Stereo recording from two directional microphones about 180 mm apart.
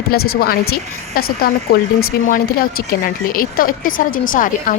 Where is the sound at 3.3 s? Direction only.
50° left (ahead or behind).